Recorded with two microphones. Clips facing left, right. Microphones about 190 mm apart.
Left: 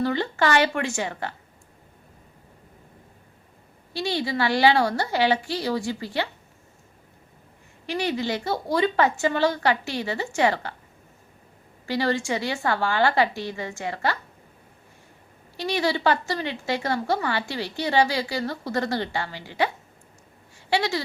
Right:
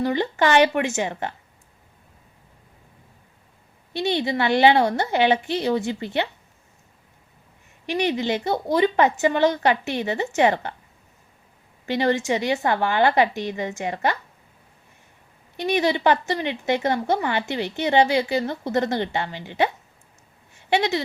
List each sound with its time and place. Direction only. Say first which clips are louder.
0.0 s a woman's voice: right 2 dB; 15° right (ahead or behind)
3.9 s a woman's voice: right 3 dB; 20° right (ahead or behind)
7.9 s a woman's voice: right 3 dB; 20° right (ahead or behind)
11.9 s a woman's voice: right 3 dB; 20° right (ahead or behind)
15.5 s a woman's voice: right 3 dB; 20° right (ahead or behind)